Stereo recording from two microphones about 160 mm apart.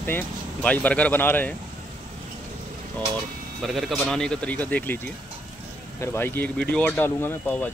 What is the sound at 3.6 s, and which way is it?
Speech, centre (ahead or behind).